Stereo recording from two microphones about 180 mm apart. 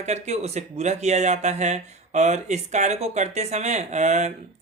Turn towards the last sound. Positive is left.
turn(degrees=-40)  # may be behind; listen again after turning